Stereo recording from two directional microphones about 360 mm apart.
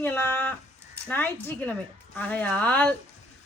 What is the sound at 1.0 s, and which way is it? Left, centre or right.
Speech, centre.